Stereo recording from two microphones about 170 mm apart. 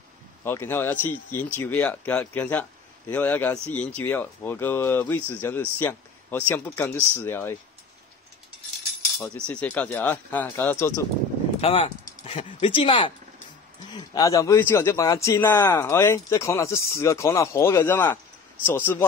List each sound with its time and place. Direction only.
0.4 s a man's voice: 15° left (ahead or behind)
9.2 s a man's voice: 10° left (ahead or behind)
11.6 s speech: 35° left (ahead or behind)
13.9 s a man's voice: 20° left (ahead or behind)